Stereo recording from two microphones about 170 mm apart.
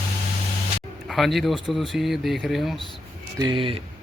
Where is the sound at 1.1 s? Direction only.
Centre (ahead or behind).